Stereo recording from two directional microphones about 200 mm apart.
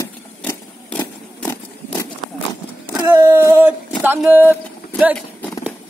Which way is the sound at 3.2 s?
10° right (ahead or behind).